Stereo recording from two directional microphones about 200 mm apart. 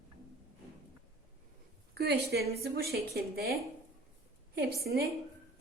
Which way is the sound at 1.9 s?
55° right (ahead or behind).